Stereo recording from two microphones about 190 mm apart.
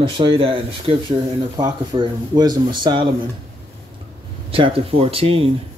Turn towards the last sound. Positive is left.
turn(degrees=-30)  # may be behind; listen again after turning